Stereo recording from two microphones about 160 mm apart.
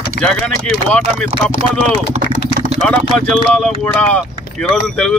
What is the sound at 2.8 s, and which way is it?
Speech, 5° left (ahead or behind).